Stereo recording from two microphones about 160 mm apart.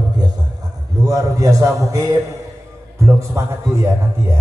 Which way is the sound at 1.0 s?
20° right (ahead or behind).